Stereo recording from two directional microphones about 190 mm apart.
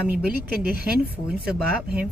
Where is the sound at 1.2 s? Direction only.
5° right (ahead or behind).